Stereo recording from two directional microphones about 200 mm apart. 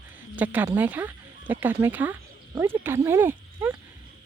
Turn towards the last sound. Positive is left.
turn(degrees=-10)  # may be behind; listen again after turning